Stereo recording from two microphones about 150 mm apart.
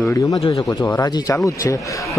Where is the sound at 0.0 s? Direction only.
20° left (ahead or behind).